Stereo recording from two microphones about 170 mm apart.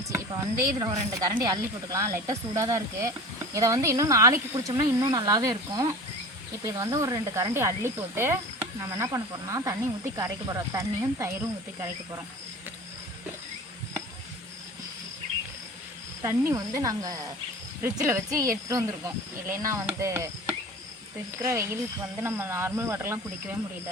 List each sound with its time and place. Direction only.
0.6 s speech: 25° right (ahead or behind)
16.2 s speech: 15° right (ahead or behind)